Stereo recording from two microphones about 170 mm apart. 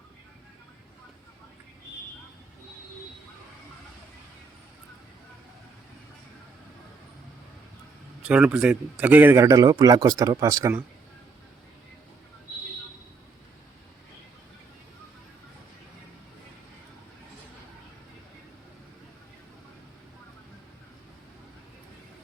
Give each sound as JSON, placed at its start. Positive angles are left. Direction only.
{"t": 8.2, "sound": "a man's voice", "side_deg": -5}